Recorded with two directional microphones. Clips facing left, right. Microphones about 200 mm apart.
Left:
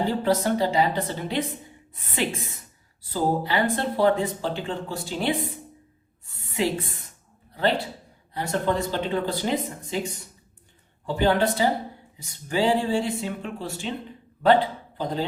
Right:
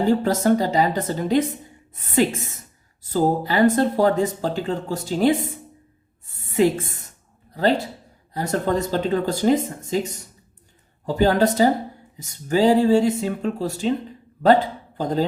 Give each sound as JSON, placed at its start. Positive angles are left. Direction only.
{"t": 0.0, "sound": "speech", "side_deg": -45}
{"t": 6.2, "sound": "a sound", "side_deg": -50}
{"t": 7.5, "sound": "speech", "side_deg": -40}